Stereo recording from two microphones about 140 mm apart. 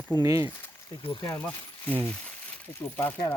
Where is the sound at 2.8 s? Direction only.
15° left (ahead or behind).